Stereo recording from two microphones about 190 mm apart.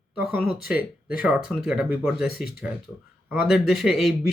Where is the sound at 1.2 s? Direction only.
5° right (ahead or behind).